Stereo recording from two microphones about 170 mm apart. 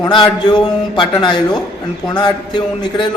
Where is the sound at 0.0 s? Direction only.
25° left (ahead or behind).